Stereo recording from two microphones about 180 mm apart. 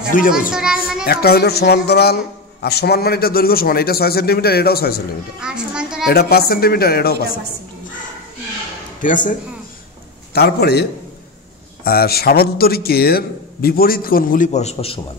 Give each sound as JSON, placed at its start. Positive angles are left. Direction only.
{"t": 0.1, "sound": "speech", "side_deg": 50}
{"t": 0.5, "sound": "a child's voice", "side_deg": -5}
{"t": 1.0, "sound": "speech", "side_deg": 60}
{"t": 5.4, "sound": "a child's voice", "side_deg": -5}
{"t": 6.0, "sound": "speech", "side_deg": 60}
{"t": 9.0, "sound": "speech", "side_deg": 45}
{"t": 10.3, "sound": "speech", "side_deg": 60}